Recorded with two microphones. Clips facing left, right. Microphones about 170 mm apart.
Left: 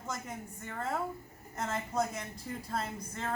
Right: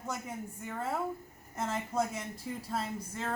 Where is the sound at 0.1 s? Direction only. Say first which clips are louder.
Right 1 dB; 10° right (ahead or behind).